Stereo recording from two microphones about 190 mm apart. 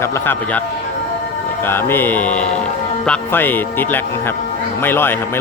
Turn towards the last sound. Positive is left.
turn(degrees=10)  # may be behind; listen again after turning